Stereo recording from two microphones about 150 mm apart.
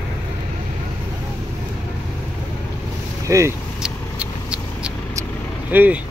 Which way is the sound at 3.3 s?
20° right (ahead or behind).